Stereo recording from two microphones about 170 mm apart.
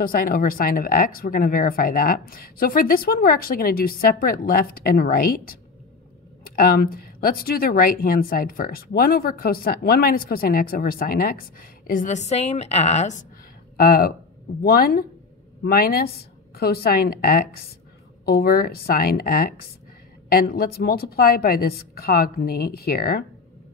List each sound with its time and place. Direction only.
0.0 s speech: 55° left (ahead or behind)
11.9 s a woman's voice: 45° left (ahead or behind)
13.7 s speech: 65° left (ahead or behind)